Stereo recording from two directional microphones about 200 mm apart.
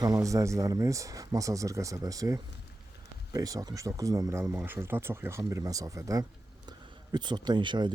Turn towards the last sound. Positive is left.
turn(degrees=-20)  # may be behind; listen again after turning